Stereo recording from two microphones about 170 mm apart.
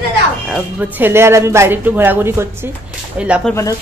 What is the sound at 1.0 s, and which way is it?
Speech, 15° right (ahead or behind).